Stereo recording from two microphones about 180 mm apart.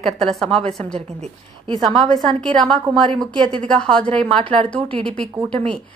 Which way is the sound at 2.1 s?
5° left (ahead or behind).